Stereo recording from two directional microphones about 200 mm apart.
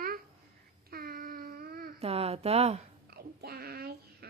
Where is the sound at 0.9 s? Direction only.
45° right (ahead or behind).